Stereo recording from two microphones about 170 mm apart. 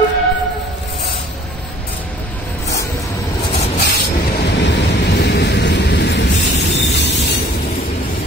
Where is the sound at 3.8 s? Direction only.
75° left (ahead or behind).